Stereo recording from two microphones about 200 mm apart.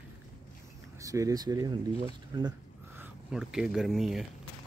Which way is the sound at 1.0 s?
15° right (ahead or behind).